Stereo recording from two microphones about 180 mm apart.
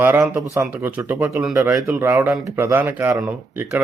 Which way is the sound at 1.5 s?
20° right (ahead or behind).